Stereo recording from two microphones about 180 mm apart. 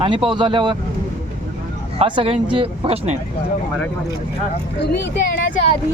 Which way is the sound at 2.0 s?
30° right (ahead or behind).